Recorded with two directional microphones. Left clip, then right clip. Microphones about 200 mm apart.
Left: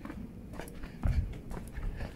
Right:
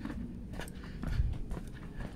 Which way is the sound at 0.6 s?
10° right (ahead or behind).